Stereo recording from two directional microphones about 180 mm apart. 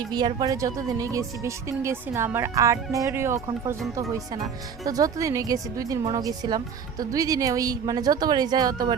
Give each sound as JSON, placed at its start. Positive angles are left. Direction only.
{"t": 0.1, "sound": "a woman's voice", "side_deg": -20}